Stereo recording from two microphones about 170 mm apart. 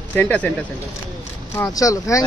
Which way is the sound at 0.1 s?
10° left (ahead or behind).